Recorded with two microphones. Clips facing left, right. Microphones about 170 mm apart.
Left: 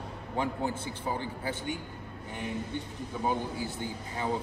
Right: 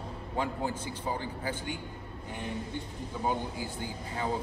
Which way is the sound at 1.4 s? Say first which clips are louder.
Left 1 dB; 25° left (ahead or behind).